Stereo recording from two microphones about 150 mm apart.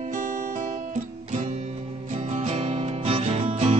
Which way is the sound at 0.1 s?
65° right (ahead or behind).